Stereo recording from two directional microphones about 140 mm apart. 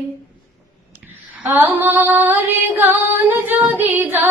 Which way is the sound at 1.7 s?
15° right (ahead or behind).